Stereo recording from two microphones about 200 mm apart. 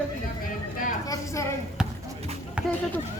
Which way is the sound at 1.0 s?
15° left (ahead or behind).